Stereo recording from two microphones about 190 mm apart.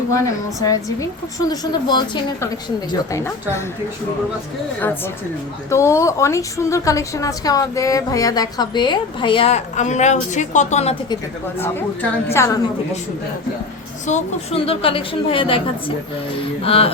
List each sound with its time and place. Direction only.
0.1 s a woman's voice: 20° left (ahead or behind)
5.7 s a woman's voice: 15° left (ahead or behind); by 10.9 s 35° left (ahead or behind)
11.6 s a woman's voice: 10° left (ahead or behind)
14.1 s a woman's voice: 35° left (ahead or behind)
16.6 s speech: 30° left (ahead or behind)